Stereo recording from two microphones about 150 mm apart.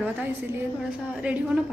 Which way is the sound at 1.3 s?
10° right (ahead or behind).